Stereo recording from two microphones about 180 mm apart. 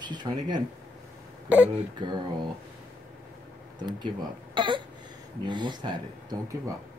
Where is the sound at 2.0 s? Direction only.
25° right (ahead or behind).